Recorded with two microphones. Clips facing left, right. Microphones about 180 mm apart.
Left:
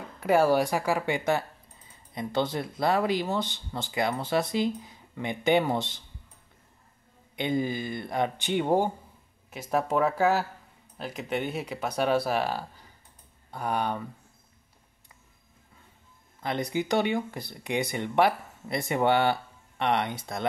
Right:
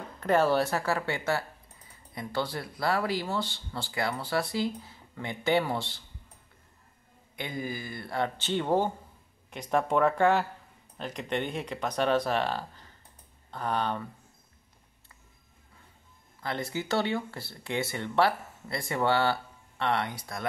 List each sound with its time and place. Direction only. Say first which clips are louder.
0.2 s speech: left 2 dB; 10° left (ahead or behind)
7.3 s speech: left 7 dB; 25° left (ahead or behind)
16.4 s speech: left 4 dB; 20° left (ahead or behind)